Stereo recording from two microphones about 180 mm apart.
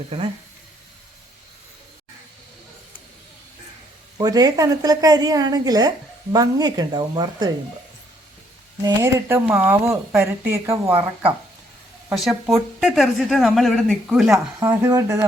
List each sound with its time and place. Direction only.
4.2 s a woman's voice: 20° right (ahead or behind)
8.8 s a woman's voice: 15° right (ahead or behind)
12.1 s speech: centre (ahead or behind)
14.7 s a woman's voice: 15° right (ahead or behind)